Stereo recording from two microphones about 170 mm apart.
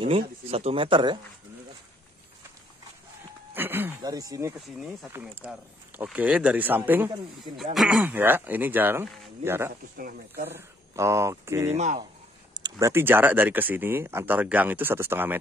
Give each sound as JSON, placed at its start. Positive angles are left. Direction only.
{"t": 0.0, "sound": "speech", "side_deg": -35}
{"t": 3.5, "sound": "speech", "side_deg": -10}
{"t": 5.4, "sound": "speech", "side_deg": -5}
{"t": 9.9, "sound": "speech", "side_deg": -60}
{"t": 10.5, "sound": "speech", "side_deg": -15}
{"t": 11.7, "sound": "speech", "side_deg": -45}
{"t": 12.6, "sound": "speech", "side_deg": -20}